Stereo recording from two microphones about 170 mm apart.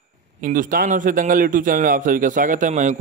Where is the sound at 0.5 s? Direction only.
50° right (ahead or behind).